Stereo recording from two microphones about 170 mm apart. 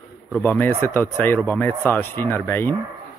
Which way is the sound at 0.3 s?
10° left (ahead or behind).